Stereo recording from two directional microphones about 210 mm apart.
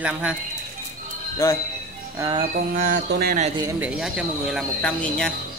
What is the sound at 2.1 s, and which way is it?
Speech, 15° right (ahead or behind).